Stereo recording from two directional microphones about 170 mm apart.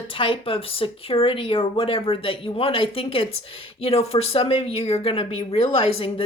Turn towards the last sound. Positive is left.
turn(degrees=30)  # may be behind; listen again after turning